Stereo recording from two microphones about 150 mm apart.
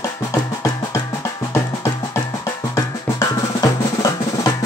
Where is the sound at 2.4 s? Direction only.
20° left (ahead or behind).